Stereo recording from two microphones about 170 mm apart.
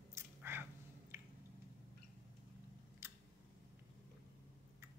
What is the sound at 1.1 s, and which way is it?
Drip, 15° right (ahead or behind).